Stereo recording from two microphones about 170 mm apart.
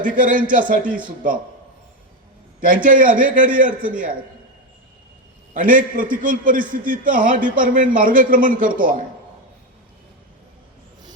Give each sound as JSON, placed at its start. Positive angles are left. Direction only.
{"t": 0.0, "sound": "a man's voice", "side_deg": -55}
{"t": 2.6, "sound": "a man's voice", "side_deg": -55}
{"t": 5.5, "sound": "a man's voice", "side_deg": -55}